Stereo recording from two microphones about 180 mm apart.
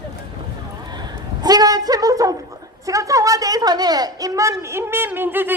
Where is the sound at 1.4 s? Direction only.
20° right (ahead or behind).